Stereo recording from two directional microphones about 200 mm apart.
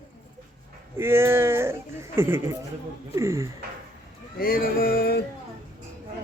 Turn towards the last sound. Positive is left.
turn(degrees=50)  # may be behind; listen again after turning